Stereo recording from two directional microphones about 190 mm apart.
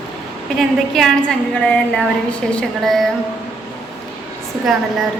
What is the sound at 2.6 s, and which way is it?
Speech, centre (ahead or behind).